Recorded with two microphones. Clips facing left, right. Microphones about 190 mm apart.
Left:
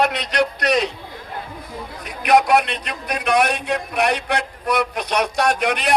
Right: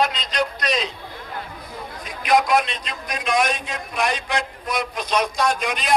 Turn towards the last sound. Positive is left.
turn(degrees=65)  # may be behind; listen again after turning